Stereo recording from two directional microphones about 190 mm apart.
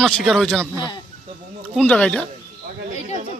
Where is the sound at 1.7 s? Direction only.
5° left (ahead or behind).